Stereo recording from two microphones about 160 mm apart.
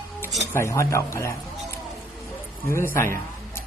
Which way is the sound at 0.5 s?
20° left (ahead or behind).